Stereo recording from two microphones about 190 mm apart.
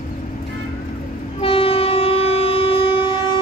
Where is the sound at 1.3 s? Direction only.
30° left (ahead or behind).